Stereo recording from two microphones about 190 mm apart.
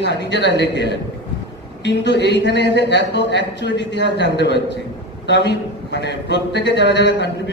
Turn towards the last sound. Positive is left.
turn(degrees=65)  # may be behind; listen again after turning